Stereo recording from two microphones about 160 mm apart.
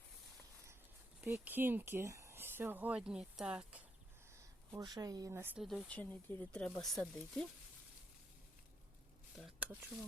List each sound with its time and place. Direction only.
1.2 s speech: 10° right (ahead or behind)
4.3 s speech: 25° right (ahead or behind)
5.6 s speech: centre (ahead or behind)
9.3 s a sound: 5° right (ahead or behind)